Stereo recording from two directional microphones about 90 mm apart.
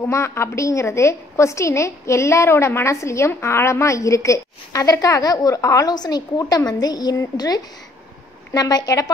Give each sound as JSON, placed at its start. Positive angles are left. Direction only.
{"t": 0.1, "sound": "a woman's voice", "side_deg": 30}